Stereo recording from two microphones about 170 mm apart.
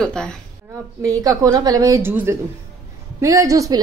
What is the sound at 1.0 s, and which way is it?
A woman's voice, 20° right (ahead or behind).